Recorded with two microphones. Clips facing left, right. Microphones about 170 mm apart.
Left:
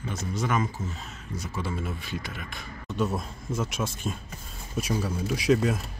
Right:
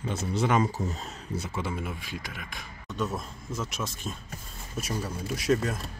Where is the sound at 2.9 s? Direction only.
30° left (ahead or behind).